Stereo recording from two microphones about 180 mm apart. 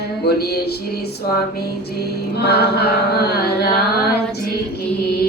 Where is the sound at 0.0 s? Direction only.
65° left (ahead or behind).